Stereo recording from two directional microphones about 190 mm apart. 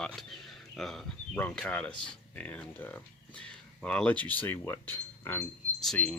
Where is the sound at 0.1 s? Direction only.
Centre (ahead or behind).